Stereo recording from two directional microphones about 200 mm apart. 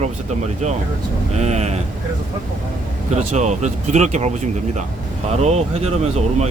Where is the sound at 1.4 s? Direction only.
35° right (ahead or behind).